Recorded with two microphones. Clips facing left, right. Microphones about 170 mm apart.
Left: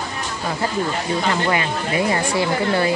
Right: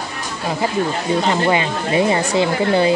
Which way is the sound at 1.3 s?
25° right (ahead or behind).